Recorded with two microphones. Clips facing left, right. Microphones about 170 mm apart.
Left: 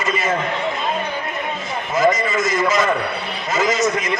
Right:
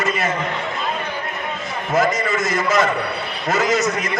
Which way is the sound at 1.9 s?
60° right (ahead or behind).